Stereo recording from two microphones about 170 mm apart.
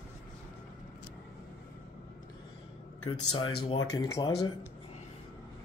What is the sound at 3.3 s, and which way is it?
Speech, 35° left (ahead or behind).